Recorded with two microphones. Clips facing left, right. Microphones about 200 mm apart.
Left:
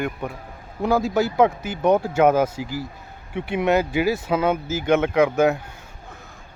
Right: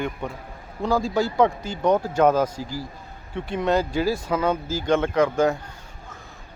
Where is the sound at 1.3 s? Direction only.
5° left (ahead or behind).